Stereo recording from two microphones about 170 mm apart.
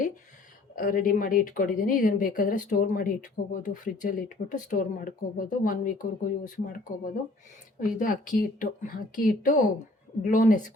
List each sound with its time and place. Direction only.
0.8 s speech: 55° left (ahead or behind)